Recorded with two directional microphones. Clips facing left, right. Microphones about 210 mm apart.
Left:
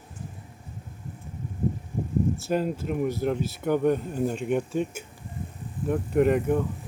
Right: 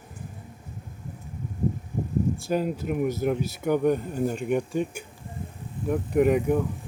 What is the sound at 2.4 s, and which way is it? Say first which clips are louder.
Speech: even; centre (ahead or behind).